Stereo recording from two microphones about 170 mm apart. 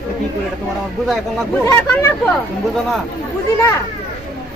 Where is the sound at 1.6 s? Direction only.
15° left (ahead or behind).